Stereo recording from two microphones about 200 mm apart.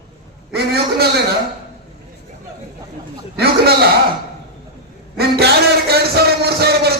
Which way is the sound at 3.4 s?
50° right (ahead or behind).